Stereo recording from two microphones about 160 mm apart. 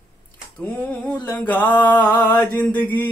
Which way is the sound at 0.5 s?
10° left (ahead or behind).